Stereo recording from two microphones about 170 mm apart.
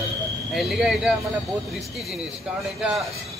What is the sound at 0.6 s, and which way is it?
Speech, centre (ahead or behind).